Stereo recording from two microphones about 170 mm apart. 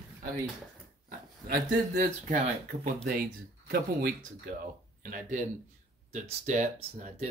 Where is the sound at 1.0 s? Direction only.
60° right (ahead or behind).